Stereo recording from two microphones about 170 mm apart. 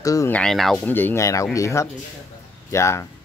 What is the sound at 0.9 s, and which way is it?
Speech, 10° left (ahead or behind).